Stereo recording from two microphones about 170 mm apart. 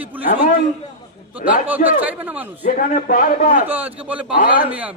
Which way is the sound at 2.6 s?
50° left (ahead or behind).